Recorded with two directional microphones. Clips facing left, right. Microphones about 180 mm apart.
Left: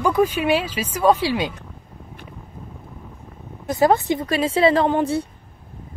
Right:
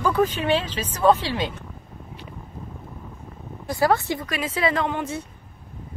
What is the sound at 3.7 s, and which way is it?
Speech, 20° left (ahead or behind).